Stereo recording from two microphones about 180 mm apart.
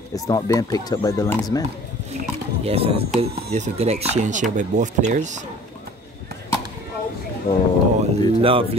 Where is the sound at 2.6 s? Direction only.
35° right (ahead or behind).